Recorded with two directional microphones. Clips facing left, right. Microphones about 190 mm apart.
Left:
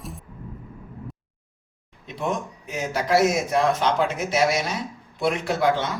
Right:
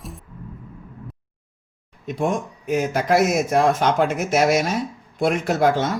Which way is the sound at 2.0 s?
55° right (ahead or behind).